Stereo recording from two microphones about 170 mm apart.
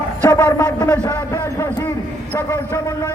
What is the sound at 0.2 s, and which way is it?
A man's voice, 10° left (ahead or behind).